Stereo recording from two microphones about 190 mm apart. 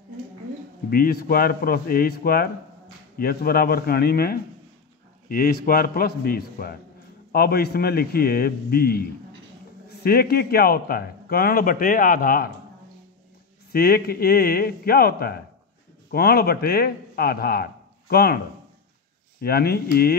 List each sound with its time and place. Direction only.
0.8 s speech: 50° left (ahead or behind)
13.7 s speech: 55° left (ahead or behind)
19.4 s speech: 55° left (ahead or behind)